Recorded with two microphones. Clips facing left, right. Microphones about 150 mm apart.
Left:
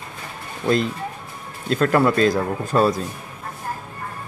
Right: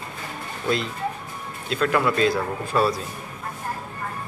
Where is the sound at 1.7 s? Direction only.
45° left (ahead or behind).